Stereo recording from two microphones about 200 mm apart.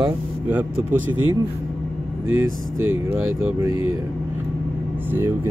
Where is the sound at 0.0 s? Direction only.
10° right (ahead or behind).